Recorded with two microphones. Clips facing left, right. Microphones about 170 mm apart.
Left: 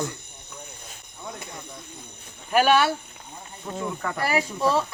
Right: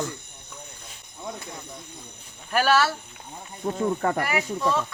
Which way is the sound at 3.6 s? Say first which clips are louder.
Right 6 dB; 40° right (ahead or behind).